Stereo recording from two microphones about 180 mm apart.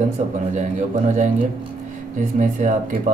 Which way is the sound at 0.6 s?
45° right (ahead or behind).